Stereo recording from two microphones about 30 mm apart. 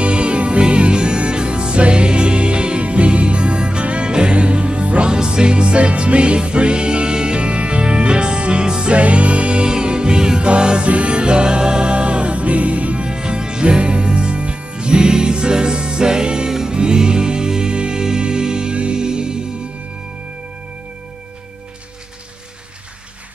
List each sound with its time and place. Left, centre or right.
0.0 s music: right
5.1 s music: right
8.9 s music: right
9.7 s music: right
13.0 s music: right